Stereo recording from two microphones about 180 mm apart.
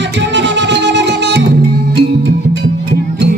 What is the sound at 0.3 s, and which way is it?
Music, 80° right.